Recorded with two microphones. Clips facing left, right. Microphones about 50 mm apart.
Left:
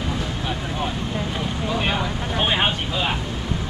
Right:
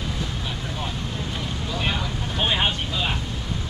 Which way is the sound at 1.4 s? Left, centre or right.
Centre.